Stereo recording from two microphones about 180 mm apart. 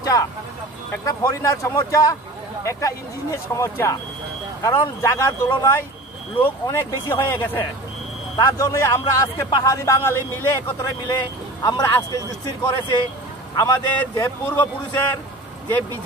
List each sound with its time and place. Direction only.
0.0 s vehicle: 20° left (ahead or behind)
1.0 s a man's voice: 20° left (ahead or behind)
13.6 s a man's voice: 15° left (ahead or behind)